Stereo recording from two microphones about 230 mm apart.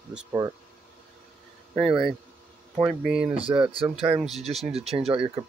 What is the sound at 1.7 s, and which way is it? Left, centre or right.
Speech, centre.